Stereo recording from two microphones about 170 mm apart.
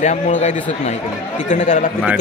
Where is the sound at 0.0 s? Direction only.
45° left (ahead or behind).